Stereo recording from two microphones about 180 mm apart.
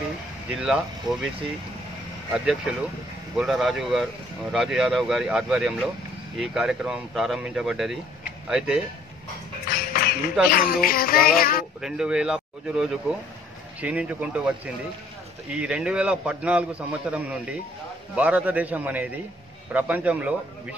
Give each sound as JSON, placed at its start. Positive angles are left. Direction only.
{"t": 0.6, "sound": "speech", "side_deg": 0}
{"t": 2.3, "sound": "speech", "side_deg": -5}
{"t": 9.7, "sound": "a sound", "side_deg": 55}
{"t": 10.5, "sound": "speech", "side_deg": 55}
{"t": 11.8, "sound": "a man's voice", "side_deg": -5}
{"t": 15.5, "sound": "a man's voice", "side_deg": -5}